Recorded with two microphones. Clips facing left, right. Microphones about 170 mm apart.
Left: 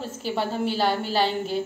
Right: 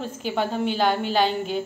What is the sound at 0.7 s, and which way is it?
Speech, 35° left (ahead or behind).